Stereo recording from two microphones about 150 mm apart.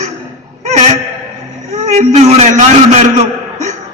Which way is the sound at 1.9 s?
50° right (ahead or behind).